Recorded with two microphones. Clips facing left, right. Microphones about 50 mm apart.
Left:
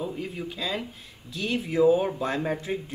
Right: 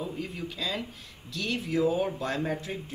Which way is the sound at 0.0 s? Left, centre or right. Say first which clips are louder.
Left 3 dB; centre.